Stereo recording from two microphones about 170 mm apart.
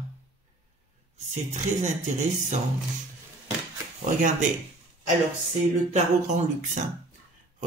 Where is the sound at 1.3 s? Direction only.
45° right (ahead or behind).